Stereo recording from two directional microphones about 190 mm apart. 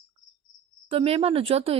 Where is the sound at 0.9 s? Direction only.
30° right (ahead or behind).